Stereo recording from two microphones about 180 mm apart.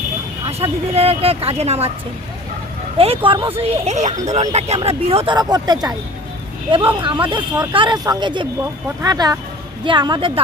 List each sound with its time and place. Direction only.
0.4 s speech: 30° right (ahead or behind)
3.2 s speech: 25° right (ahead or behind)